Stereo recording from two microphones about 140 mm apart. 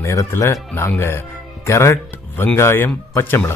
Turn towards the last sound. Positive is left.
turn(degrees=15)  # may be behind; listen again after turning